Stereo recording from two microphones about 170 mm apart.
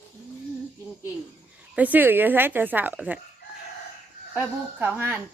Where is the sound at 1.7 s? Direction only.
10° right (ahead or behind).